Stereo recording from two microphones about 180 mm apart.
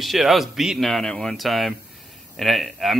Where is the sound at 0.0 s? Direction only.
Centre (ahead or behind).